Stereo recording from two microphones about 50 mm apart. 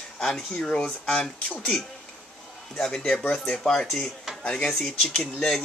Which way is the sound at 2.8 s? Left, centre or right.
Centre.